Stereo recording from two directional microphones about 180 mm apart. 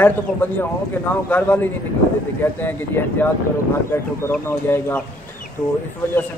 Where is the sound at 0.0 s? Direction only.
10° left (ahead or behind).